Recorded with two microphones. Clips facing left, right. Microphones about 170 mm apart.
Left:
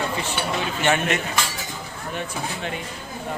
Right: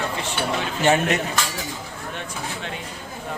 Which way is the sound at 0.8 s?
35° right (ahead or behind).